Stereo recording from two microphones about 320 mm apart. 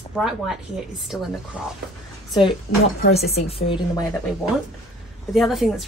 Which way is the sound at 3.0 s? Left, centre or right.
Left.